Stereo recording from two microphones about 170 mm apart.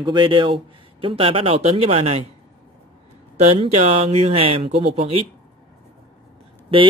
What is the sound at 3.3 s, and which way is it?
A man's voice, 40° right (ahead or behind).